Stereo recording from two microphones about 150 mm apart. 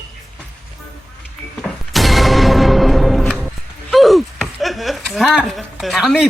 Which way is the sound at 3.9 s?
Centre (ahead or behind).